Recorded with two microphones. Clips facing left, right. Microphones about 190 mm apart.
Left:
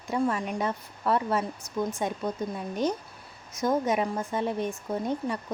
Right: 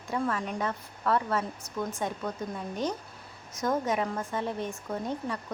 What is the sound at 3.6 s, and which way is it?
Speech, 15° left (ahead or behind).